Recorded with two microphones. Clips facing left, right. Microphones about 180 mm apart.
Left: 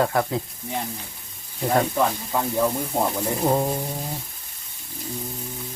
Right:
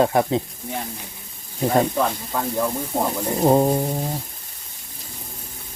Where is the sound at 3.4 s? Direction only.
30° right (ahead or behind).